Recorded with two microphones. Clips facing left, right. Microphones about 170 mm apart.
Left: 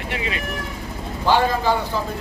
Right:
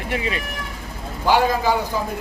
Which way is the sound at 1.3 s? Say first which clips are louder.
Right 1 dB; 10° right (ahead or behind).